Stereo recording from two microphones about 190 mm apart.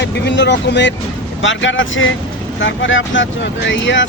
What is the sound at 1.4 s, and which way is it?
Speech, 85° left.